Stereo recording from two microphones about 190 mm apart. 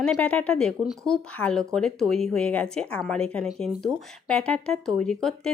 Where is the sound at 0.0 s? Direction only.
5° left (ahead or behind).